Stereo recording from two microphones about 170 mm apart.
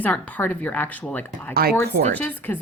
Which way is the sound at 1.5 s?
65° right (ahead or behind).